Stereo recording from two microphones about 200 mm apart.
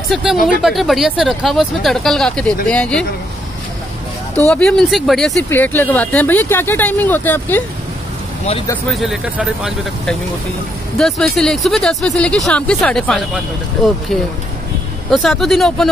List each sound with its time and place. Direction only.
0.1 s speech: centre (ahead or behind)
4.5 s speech: 5° left (ahead or behind)
8.9 s speech: centre (ahead or behind)
15.0 s speech: centre (ahead or behind)